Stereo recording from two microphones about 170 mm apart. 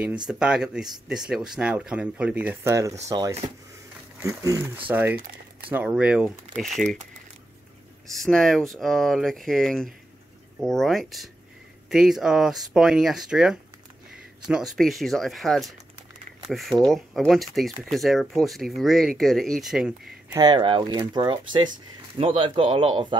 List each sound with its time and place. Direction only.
0.3 s speech: 5° right (ahead or behind)
8.1 s speech: centre (ahead or behind)
20.3 s speech: 25° right (ahead or behind)